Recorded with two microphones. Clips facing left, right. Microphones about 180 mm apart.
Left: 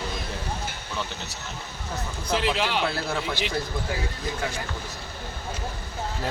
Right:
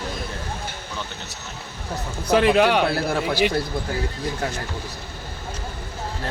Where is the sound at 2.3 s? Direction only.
55° right (ahead or behind).